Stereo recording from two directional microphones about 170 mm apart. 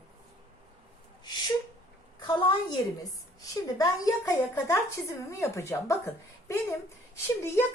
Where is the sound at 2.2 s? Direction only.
30° left (ahead or behind).